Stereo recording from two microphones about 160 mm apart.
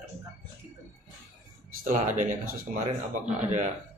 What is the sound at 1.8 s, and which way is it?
Speech, 50° right (ahead or behind).